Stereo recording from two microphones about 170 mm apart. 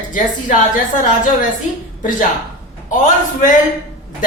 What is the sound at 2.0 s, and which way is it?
Speech, 50° left (ahead or behind).